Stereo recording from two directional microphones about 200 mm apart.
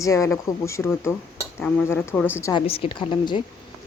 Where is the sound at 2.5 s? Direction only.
25° left (ahead or behind).